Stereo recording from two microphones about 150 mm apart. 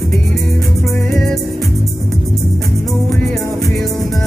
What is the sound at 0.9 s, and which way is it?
Music, 5° left (ahead or behind).